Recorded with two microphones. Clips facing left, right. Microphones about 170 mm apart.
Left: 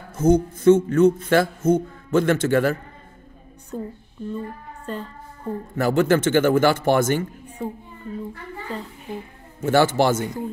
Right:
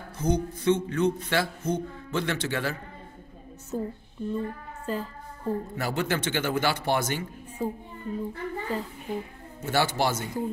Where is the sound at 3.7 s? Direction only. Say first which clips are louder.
Even; 5° right (ahead or behind).